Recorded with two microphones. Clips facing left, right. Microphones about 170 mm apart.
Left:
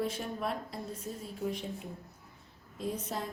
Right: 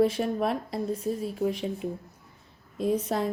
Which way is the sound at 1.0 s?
90° right.